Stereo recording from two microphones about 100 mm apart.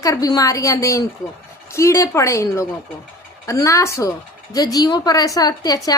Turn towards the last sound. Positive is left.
turn(degrees=40)  # may be behind; listen again after turning